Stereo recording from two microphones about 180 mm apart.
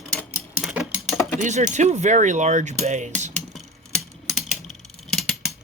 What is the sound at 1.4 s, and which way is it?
Speech, 40° right (ahead or behind).